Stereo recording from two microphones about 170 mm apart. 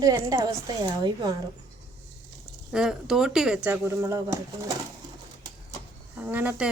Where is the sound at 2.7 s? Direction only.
5° right (ahead or behind).